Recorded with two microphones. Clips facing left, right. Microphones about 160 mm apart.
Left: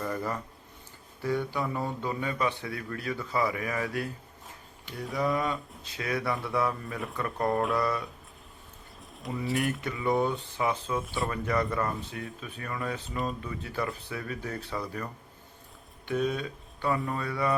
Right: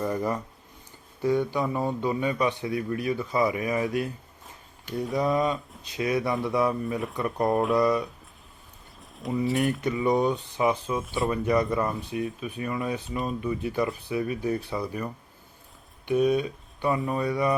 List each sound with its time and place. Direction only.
0.0 s a man's voice: 15° right (ahead or behind)
5.1 s a man's voice: 20° right (ahead or behind)
9.0 s a sound: centre (ahead or behind)
9.8 s a man's voice: 20° right (ahead or behind)